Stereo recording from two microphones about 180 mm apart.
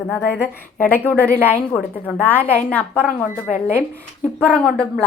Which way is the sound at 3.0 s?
10° right (ahead or behind).